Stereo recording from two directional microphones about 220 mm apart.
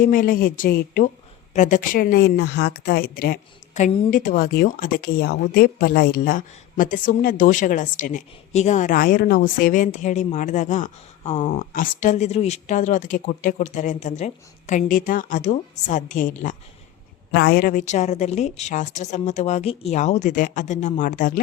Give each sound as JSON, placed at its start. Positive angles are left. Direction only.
{"t": 0.0, "sound": "a woman's voice", "side_deg": 40}
{"t": 3.8, "sound": "speech", "side_deg": 35}
{"t": 17.3, "sound": "speech", "side_deg": 45}